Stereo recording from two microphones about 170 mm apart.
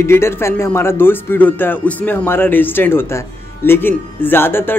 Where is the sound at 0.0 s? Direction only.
15° left (ahead or behind).